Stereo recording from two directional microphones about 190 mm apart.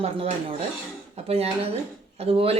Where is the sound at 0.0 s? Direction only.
30° right (ahead or behind).